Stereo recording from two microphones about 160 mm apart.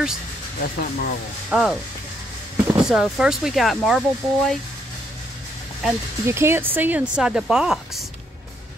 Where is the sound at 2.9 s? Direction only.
Centre (ahead or behind).